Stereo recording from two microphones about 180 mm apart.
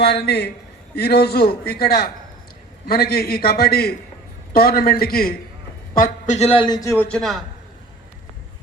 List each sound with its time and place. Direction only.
0.0 s a man's voice: 65° left (ahead or behind)
6.0 s a man's voice: 40° left (ahead or behind)
6.8 s a man's voice: 10° left (ahead or behind)